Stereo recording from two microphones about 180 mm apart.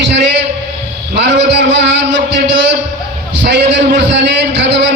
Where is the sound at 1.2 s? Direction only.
70° right (ahead or behind).